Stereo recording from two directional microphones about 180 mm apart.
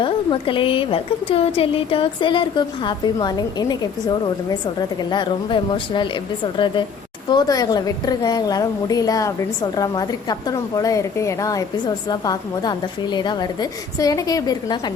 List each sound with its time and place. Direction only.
0.0 s a woman's voice: 30° left (ahead or behind)